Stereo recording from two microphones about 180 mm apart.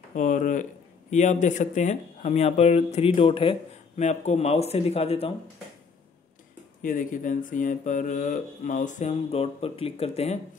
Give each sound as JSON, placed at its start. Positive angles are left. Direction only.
{"t": 0.1, "sound": "speech", "side_deg": 45}
{"t": 6.8, "sound": "speech", "side_deg": 50}